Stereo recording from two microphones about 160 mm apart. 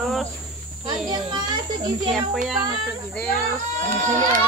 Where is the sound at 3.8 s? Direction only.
50° right (ahead or behind).